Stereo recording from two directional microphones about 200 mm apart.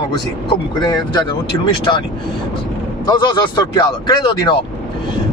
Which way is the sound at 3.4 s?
20° left (ahead or behind).